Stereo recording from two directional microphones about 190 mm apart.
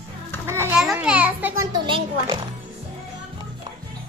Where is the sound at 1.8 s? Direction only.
25° right (ahead or behind).